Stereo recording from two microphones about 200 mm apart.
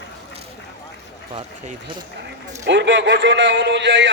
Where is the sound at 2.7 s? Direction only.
65° right (ahead or behind).